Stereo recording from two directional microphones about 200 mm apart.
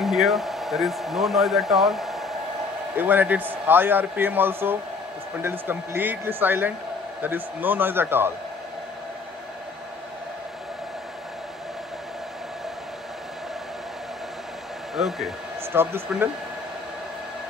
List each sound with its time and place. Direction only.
0.0 s speech: centre (ahead or behind)
15.0 s speech: centre (ahead or behind)
15.6 s speech: 10° right (ahead or behind)